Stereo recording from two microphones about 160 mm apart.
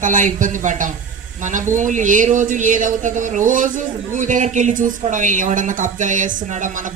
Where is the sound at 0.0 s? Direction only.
55° right (ahead or behind).